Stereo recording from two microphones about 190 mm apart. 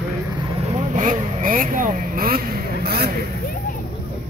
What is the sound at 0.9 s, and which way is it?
Vehicle, 45° right (ahead or behind).